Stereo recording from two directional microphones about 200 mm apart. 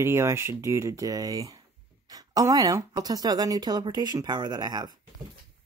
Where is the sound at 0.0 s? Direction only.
15° right (ahead or behind).